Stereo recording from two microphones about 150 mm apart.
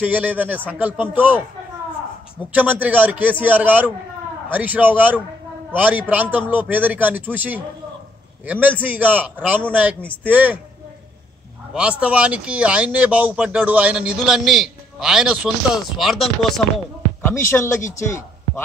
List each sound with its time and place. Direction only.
0.0 s speech: 10° right (ahead or behind)
2.5 s speech: 10° right (ahead or behind)
11.7 s a man's voice: 10° right (ahead or behind)
17.2 s a man's voice: 15° left (ahead or behind)